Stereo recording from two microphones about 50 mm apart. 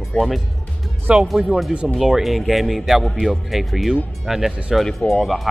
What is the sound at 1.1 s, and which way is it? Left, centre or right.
Speech, centre.